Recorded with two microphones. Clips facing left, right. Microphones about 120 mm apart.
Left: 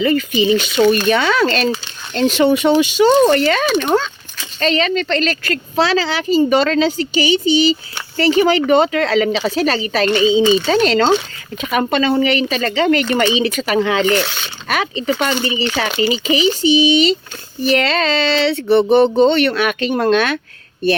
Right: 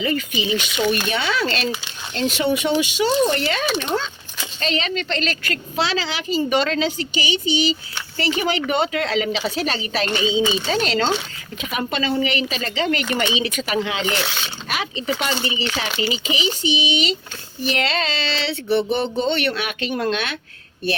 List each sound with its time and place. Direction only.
0.0 s speech: 45° left (ahead or behind)
3.1 s speech: 55° left (ahead or behind)
4.6 s a woman's voice: 40° left (ahead or behind)